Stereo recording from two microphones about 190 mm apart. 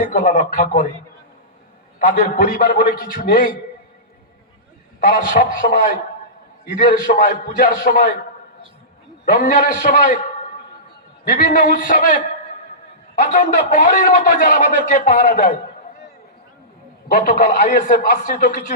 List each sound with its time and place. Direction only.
0.0 s a man's voice: 45° left (ahead or behind)
2.0 s a man's voice: 45° left (ahead or behind)
4.9 s a man's voice: 45° left (ahead or behind)
6.7 s a man's voice: 45° left (ahead or behind)
9.2 s a man's voice: 45° left (ahead or behind)
11.3 s a man's voice: 45° left (ahead or behind)
17.1 s a man's voice: 45° left (ahead or behind)